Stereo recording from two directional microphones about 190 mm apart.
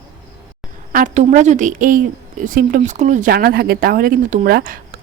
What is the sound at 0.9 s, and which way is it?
A woman's voice, 45° right (ahead or behind).